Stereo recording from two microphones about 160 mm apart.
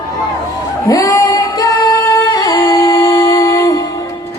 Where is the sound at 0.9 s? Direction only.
20° left (ahead or behind).